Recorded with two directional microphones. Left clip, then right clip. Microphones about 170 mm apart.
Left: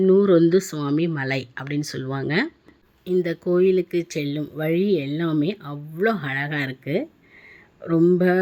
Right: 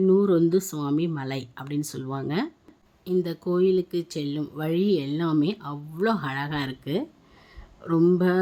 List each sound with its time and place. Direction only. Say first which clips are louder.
0.0 s speech: left 4 dB; 5° left (ahead or behind)